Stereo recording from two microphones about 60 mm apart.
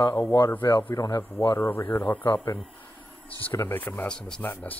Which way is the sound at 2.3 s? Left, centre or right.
Left.